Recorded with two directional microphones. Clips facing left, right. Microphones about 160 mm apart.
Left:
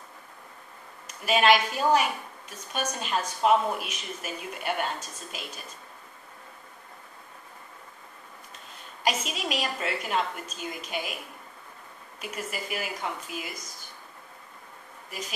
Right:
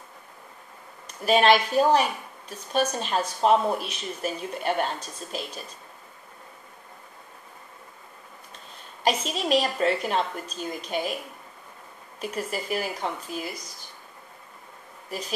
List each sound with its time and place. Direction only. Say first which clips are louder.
1.2 s a woman's voice: right 3 dB; 35° right (ahead or behind)
9.3 s a woman's voice: right 7 dB; 35° right (ahead or behind)
12.2 s a woman's voice: right 5 dB; 35° right (ahead or behind)
15.0 s speech: right 4 dB; 35° right (ahead or behind)